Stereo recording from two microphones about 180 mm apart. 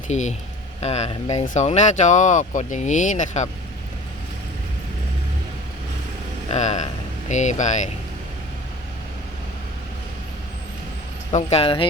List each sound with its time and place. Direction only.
0.1 s speech: 40° left (ahead or behind)
6.5 s speech: 40° left (ahead or behind)
11.3 s speech: 35° left (ahead or behind)